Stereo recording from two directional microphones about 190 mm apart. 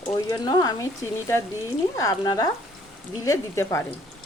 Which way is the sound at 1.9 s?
20° left (ahead or behind).